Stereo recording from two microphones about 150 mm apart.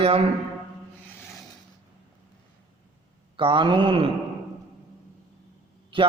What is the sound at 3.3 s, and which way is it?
Speech, 35° right (ahead or behind).